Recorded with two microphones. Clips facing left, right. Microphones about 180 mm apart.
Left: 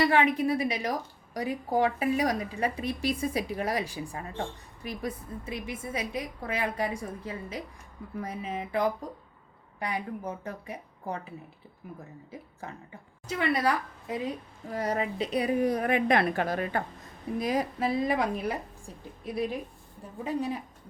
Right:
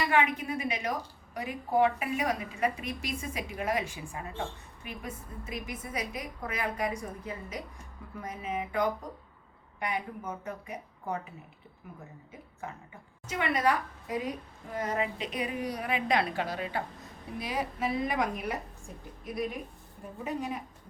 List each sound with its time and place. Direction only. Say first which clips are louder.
0.0 s speech: left 4 dB; 35° left (ahead or behind)
12.3 s speech: even; 35° left (ahead or behind)
15.6 s a woman's voice: left 7 dB; 50° left (ahead or behind)
17.4 s speech: left 4 dB; 35° left (ahead or behind)